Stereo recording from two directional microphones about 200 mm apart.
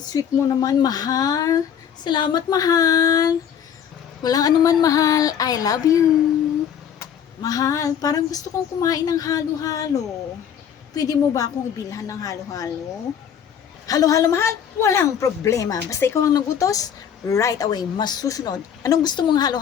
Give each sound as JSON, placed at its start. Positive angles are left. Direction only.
{"t": 0.1, "sound": "a woman's voice", "side_deg": 20}
{"t": 13.8, "sound": "a woman's voice", "side_deg": 15}